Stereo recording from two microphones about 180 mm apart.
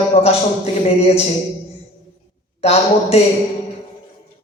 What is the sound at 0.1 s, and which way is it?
Speech, 35° left (ahead or behind).